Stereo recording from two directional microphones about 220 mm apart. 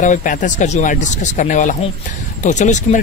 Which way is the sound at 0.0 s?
35° left (ahead or behind).